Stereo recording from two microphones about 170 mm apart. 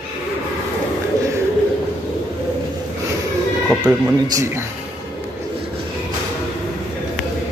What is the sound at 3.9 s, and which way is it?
Speech, 5° right (ahead or behind).